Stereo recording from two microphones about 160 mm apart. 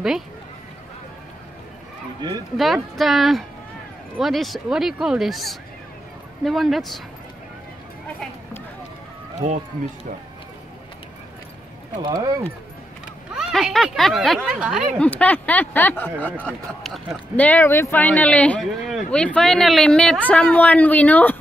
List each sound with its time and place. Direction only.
2.5 s speech: centre (ahead or behind)
12.0 s speech: 20° right (ahead or behind)
13.3 s speech: centre (ahead or behind)
15.0 s speech: 10° left (ahead or behind)